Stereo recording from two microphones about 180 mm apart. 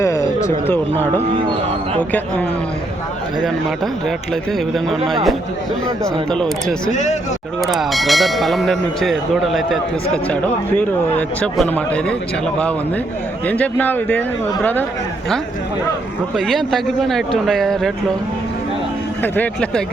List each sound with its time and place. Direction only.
0.0 s a sound: 15° left (ahead or behind)
0.7 s a man's voice: 10° left (ahead or behind)
4.7 s speech: centre (ahead or behind)
6.3 s speech: 5° left (ahead or behind)
6.9 s speech: 40° left (ahead or behind)
7.6 s a man's voice: centre (ahead or behind)
13.5 s a man's voice: 10° left (ahead or behind)
16.3 s speech: centre (ahead or behind)
19.2 s a man's voice: 10° left (ahead or behind)